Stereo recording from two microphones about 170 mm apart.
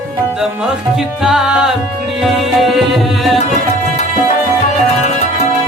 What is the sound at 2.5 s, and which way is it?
Tabla, centre (ahead or behind).